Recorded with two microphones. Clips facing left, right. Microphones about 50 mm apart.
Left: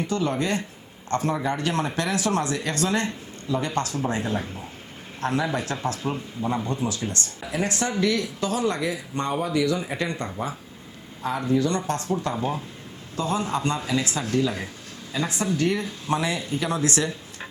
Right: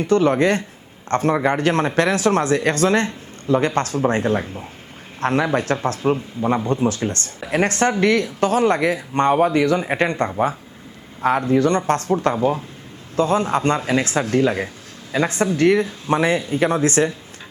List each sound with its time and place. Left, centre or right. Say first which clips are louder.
0.1 s a man's voice: right 11 dB; right